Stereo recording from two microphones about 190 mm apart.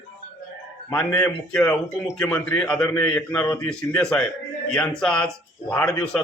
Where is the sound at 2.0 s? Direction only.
Centre (ahead or behind).